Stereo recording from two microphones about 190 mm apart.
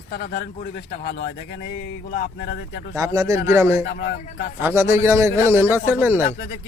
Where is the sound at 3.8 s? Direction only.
65° left (ahead or behind).